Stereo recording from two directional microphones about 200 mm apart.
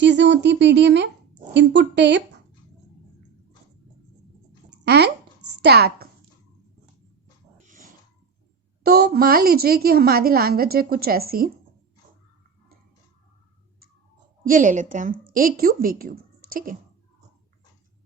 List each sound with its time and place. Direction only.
0.0 s speech: 60° right (ahead or behind)
4.9 s speech: 55° right (ahead or behind)
7.6 s a sound: 40° right (ahead or behind)
8.8 s a woman's voice: 50° right (ahead or behind)
14.4 s a woman's voice: 40° right (ahead or behind)